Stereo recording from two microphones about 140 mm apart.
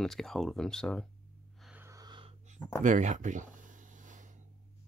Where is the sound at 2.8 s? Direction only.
60° right (ahead or behind).